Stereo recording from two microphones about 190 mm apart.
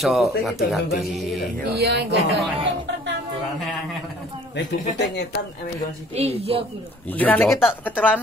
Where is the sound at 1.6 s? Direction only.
55° right (ahead or behind).